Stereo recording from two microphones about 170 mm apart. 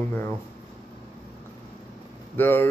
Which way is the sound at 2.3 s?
10° left (ahead or behind).